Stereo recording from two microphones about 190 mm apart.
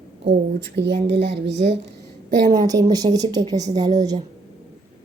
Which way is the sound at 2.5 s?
20° right (ahead or behind).